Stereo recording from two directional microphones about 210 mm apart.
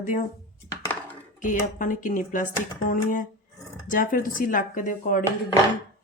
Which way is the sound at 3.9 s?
40° left (ahead or behind).